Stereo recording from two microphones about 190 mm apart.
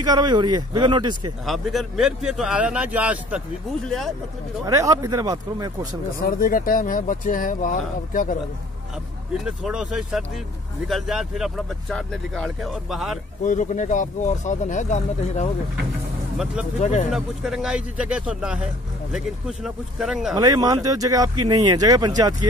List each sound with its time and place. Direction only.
0.0 s speech: 20° right (ahead or behind)
1.4 s speech: centre (ahead or behind)
4.6 s speech: 15° right (ahead or behind)
6.2 s speech: 50° left (ahead or behind)
9.6 s speech: 5° right (ahead or behind)
13.4 s speech: 40° left (ahead or behind)
16.8 s speech: 40° left (ahead or behind)
17.1 s speech: centre (ahead or behind)
20.3 s speech: 20° right (ahead or behind)